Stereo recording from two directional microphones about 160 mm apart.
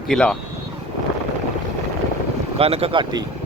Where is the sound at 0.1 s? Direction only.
5° left (ahead or behind).